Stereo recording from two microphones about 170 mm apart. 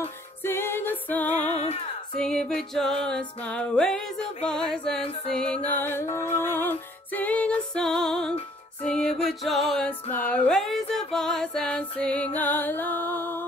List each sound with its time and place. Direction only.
0.4 s music: 15° left (ahead or behind)
1.5 s female singing: 40° left (ahead or behind)
2.1 s music: 5° left (ahead or behind)